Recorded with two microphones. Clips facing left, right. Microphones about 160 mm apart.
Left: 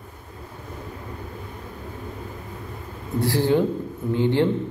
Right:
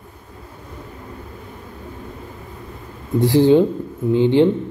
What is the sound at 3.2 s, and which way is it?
A man's voice, 20° right (ahead or behind).